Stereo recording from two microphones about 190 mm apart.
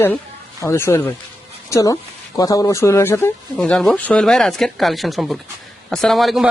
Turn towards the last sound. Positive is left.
turn(degrees=0)  # may be behind; listen again after turning